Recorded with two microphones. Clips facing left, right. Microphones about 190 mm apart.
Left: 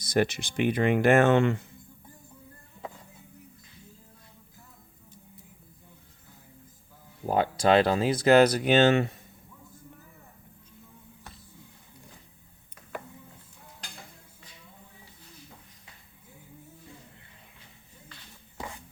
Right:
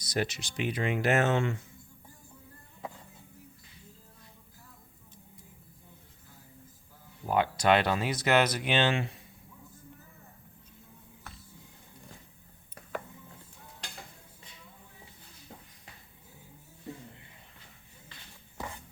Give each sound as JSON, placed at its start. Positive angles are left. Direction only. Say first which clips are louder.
{"t": 0.0, "sound": "speech", "louder": "left 7 dB", "side_deg": 55}
{"t": 7.3, "sound": "speech", "louder": "left 2 dB", "side_deg": 35}